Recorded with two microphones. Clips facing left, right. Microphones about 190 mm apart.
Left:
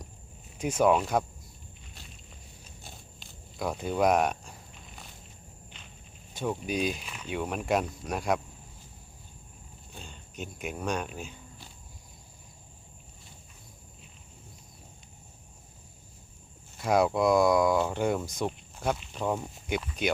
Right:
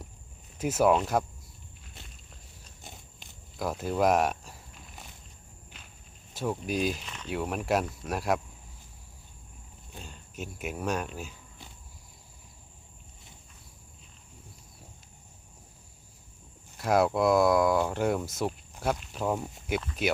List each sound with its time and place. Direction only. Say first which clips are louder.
0.6 s speech: even; 5° right (ahead or behind)
2.8 s walk: right 2 dB; 20° right (ahead or behind)
3.6 s walk: even; centre (ahead or behind)
6.3 s speech: even; centre (ahead or behind)
7.3 s speech: even; centre (ahead or behind)
9.9 s speech: right 1 dB; centre (ahead or behind)
16.7 s speech: even; centre (ahead or behind)